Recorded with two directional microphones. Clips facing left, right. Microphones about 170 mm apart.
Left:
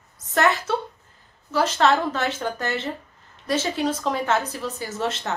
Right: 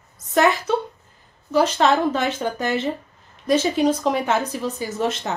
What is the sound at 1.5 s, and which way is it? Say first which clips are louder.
Speech: right 2 dB; 15° right (ahead or behind).